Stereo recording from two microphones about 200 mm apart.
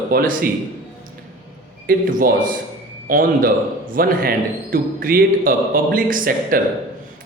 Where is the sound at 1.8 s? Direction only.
45° right (ahead or behind).